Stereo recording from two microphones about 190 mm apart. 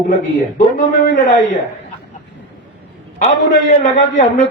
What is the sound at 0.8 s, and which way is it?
Speech, 45° left (ahead or behind).